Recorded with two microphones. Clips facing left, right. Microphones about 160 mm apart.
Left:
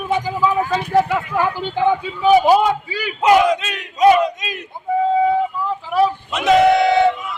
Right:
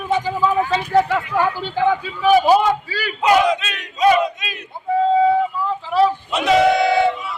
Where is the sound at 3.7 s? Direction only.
20° left (ahead or behind).